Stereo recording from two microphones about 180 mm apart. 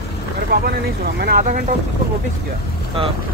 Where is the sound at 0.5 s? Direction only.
60° right (ahead or behind).